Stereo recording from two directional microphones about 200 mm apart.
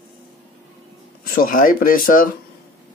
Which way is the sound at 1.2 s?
45° left (ahead or behind).